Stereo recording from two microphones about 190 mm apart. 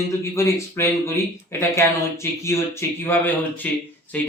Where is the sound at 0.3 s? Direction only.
15° left (ahead or behind).